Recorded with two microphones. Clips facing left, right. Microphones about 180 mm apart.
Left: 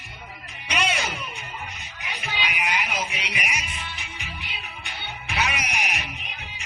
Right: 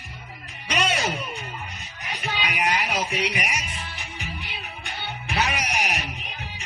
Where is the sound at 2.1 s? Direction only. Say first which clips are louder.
Right 2 dB; 40° right (ahead or behind).